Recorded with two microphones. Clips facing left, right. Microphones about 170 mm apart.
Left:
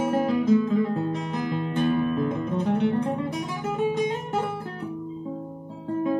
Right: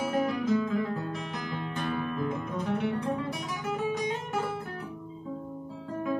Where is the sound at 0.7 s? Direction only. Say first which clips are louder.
Left 6 dB; 25° left (ahead or behind).